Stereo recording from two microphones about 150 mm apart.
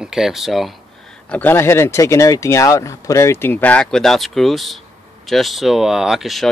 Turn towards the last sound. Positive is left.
turn(degrees=0)  # may be behind; listen again after turning